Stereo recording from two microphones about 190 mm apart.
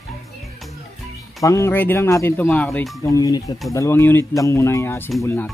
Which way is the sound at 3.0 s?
20° left (ahead or behind).